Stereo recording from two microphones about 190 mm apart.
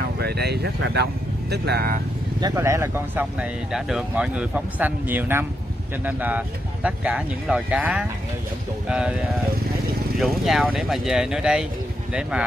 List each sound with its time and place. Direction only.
0.2 s speech: 60° right (ahead or behind)
2.4 s speech: 15° right (ahead or behind)